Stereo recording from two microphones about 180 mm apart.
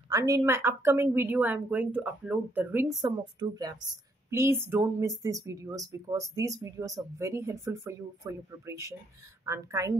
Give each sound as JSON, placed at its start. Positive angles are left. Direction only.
{"t": 0.1, "sound": "speech", "side_deg": -20}
{"t": 3.0, "sound": "speech", "side_deg": -25}